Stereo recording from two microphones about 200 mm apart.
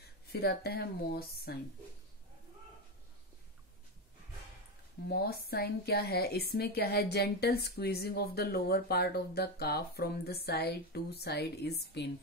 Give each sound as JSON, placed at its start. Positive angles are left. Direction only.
{"t": 0.3, "sound": "speech", "side_deg": 50}
{"t": 5.0, "sound": "speech", "side_deg": 50}